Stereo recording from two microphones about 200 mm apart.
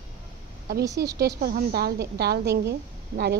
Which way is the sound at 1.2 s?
55° right (ahead or behind).